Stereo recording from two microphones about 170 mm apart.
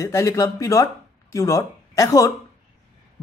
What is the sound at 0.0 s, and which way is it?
Speech, 20° left (ahead or behind).